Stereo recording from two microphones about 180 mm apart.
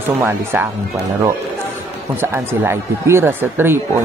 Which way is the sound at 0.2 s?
10° right (ahead or behind).